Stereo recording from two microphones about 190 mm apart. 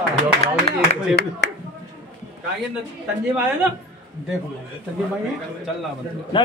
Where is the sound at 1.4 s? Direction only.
70° left (ahead or behind).